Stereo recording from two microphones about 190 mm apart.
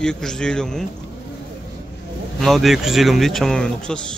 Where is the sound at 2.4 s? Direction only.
Centre (ahead or behind).